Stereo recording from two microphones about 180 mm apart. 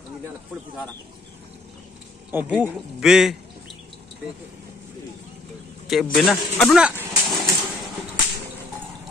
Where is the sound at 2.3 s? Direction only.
10° right (ahead or behind).